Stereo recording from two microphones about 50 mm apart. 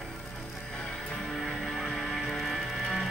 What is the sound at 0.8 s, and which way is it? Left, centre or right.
Music, centre.